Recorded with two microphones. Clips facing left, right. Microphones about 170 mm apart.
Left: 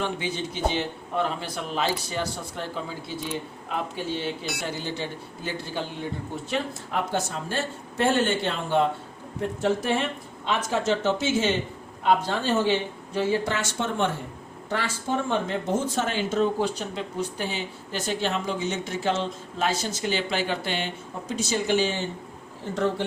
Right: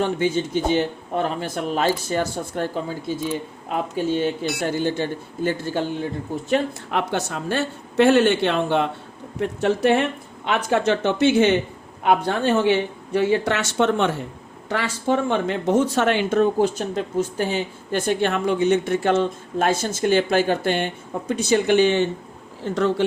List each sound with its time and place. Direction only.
0.0 s a man's voice: 45° right (ahead or behind)
3.9 s a man's voice: 50° right (ahead or behind)
6.9 s speech: 70° right (ahead or behind)
13.1 s speech: 70° right (ahead or behind)
22.6 s speech: 80° right